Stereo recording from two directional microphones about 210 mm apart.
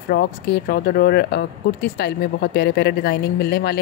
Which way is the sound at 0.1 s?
50° left (ahead or behind).